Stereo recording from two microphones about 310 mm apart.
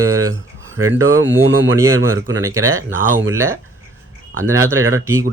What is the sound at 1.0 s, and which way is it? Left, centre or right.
Speech, right.